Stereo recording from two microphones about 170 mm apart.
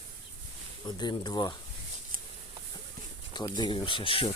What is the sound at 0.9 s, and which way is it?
Speech, 25° left (ahead or behind).